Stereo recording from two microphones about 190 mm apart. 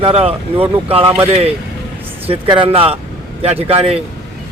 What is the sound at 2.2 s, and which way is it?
Speech, 25° right (ahead or behind).